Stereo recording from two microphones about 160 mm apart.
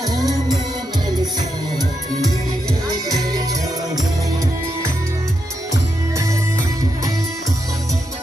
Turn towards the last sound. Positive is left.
turn(degrees=-20)  # may be behind; listen again after turning